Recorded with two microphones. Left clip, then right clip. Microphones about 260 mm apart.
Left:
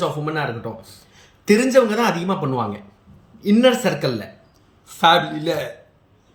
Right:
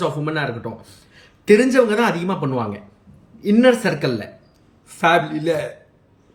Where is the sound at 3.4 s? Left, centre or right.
Centre.